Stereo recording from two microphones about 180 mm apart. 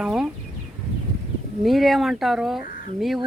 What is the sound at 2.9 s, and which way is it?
Speech, centre (ahead or behind).